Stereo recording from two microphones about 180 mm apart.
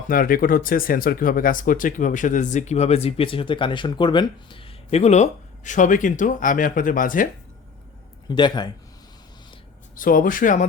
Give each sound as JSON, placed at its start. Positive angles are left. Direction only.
{"t": 0.1, "sound": "speech", "side_deg": 50}
{"t": 8.3, "sound": "a man's voice", "side_deg": 25}
{"t": 9.9, "sound": "speech", "side_deg": 50}